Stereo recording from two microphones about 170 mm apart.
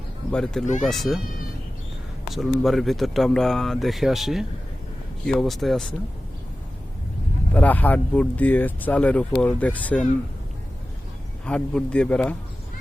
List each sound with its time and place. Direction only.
0.3 s speech: 5° left (ahead or behind)
2.3 s speech: centre (ahead or behind)
7.5 s speech: 10° left (ahead or behind)
11.4 s speech: 5° left (ahead or behind)